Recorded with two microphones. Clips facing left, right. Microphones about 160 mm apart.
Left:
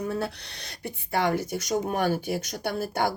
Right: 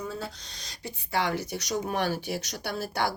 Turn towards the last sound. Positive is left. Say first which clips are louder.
# left 3 dB
turn(degrees=50)  # may be behind; listen again after turning